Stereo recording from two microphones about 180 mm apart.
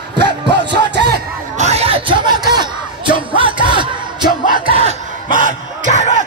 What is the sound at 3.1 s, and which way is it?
Music, 30° right (ahead or behind).